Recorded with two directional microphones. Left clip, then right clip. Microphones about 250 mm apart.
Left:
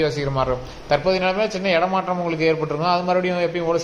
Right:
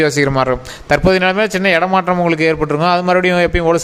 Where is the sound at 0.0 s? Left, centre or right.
Right.